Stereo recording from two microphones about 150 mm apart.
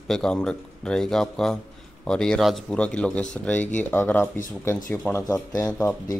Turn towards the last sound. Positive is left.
turn(degrees=20)  # may be behind; listen again after turning